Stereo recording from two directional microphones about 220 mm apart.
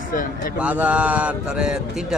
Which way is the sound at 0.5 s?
5° right (ahead or behind).